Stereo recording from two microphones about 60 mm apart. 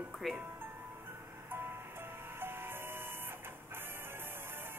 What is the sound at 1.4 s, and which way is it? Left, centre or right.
Music, right.